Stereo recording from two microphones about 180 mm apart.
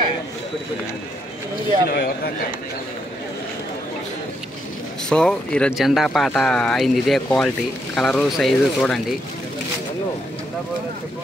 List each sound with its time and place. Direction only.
1.9 s speech: 60° left (ahead or behind)
5.1 s speech: 5° left (ahead or behind)